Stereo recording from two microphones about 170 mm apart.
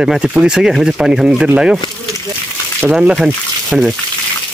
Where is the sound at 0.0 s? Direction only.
5° right (ahead or behind).